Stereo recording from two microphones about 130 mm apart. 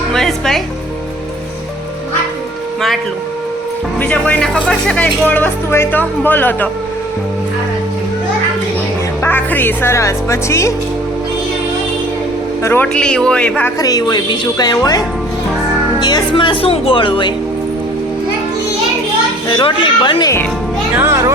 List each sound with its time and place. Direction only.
0.1 s speech: 5° left (ahead or behind)
4.0 s speech: 10° left (ahead or behind)
9.2 s speech: 15° left (ahead or behind)
12.6 s speech: 15° left (ahead or behind)
13.7 s speech: 30° left (ahead or behind)
19.5 s speech: 40° left (ahead or behind)
20.9 s speech: 20° right (ahead or behind)